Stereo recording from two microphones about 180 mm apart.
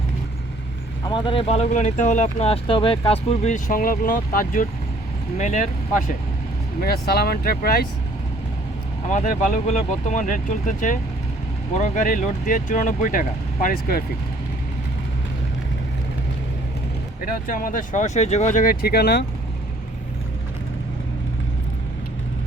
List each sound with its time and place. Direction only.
1.0 s speech: 25° left (ahead or behind); by 6.1 s 45° left (ahead or behind)
6.8 s speech: 60° left (ahead or behind)
9.1 s speech: 45° left (ahead or behind)
17.2 s speech: 50° left (ahead or behind)